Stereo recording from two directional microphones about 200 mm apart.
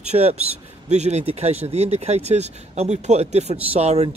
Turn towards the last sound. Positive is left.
turn(degrees=-30)  # may be behind; listen again after turning